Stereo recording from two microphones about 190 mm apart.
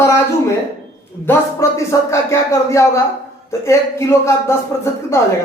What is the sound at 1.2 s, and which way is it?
Speech, 15° left (ahead or behind).